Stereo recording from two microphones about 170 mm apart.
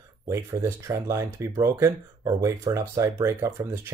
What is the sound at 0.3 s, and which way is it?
Speech, 15° right (ahead or behind).